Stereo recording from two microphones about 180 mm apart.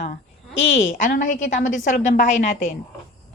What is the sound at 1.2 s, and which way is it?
A woman's voice, 45° left (ahead or behind).